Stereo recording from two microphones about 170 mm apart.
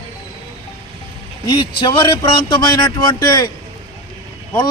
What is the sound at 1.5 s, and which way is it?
A man's voice, 25° left (ahead or behind).